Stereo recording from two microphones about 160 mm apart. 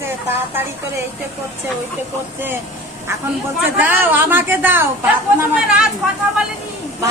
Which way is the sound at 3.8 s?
10° right (ahead or behind).